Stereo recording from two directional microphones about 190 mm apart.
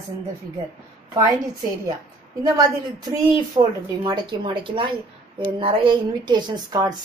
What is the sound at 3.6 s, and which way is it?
A woman's voice, 25° right (ahead or behind).